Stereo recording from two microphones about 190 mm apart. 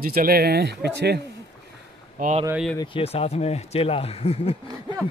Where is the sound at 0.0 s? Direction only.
50° right (ahead or behind).